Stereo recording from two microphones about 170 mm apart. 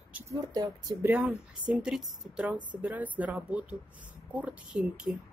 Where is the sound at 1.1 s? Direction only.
5° right (ahead or behind).